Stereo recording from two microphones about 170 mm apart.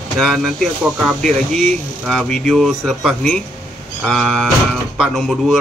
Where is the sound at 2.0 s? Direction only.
Centre (ahead or behind).